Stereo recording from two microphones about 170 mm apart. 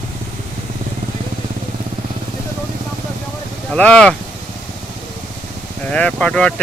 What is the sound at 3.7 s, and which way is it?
Speech, 5° left (ahead or behind).